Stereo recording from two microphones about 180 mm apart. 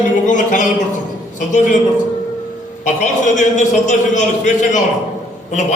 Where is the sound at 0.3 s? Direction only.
45° left (ahead or behind).